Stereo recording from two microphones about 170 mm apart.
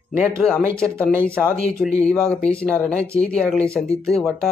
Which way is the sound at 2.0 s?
5° left (ahead or behind).